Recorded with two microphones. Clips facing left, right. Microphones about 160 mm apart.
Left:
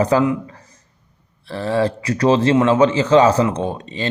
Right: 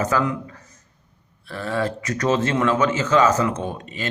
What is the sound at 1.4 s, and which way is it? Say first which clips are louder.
Speech: left 6 dB; 30° left (ahead or behind).